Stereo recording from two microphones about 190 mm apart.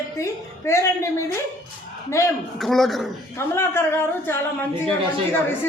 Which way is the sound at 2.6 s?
Centre (ahead or behind).